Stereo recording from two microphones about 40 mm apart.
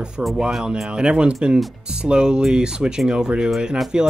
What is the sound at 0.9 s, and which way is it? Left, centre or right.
Speech, right.